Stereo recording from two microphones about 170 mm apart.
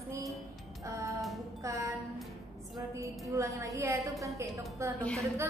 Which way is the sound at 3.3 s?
20° right (ahead or behind).